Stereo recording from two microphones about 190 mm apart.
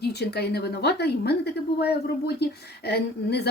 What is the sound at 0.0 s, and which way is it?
A woman's voice, 60° left (ahead or behind).